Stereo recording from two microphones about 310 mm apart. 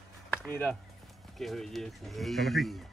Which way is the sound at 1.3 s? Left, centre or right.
Centre.